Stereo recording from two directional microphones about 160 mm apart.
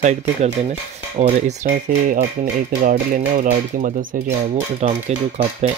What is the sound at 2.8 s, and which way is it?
Speech, 55° right (ahead or behind).